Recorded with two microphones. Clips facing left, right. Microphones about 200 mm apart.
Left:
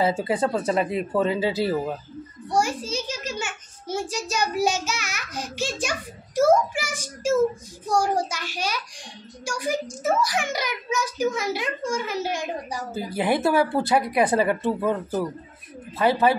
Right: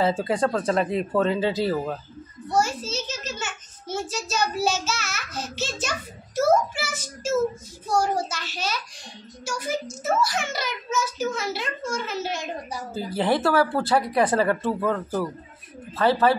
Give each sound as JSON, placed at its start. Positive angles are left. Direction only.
{"t": 0.0, "sound": "a child's voice", "side_deg": 10}